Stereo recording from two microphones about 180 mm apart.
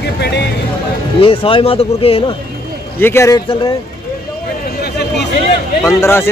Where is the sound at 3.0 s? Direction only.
15° left (ahead or behind).